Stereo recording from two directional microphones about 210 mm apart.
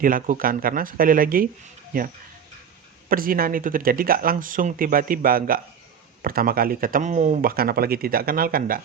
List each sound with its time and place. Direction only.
0.0 s speech: 40° right (ahead or behind)
3.1 s speech: 45° right (ahead or behind)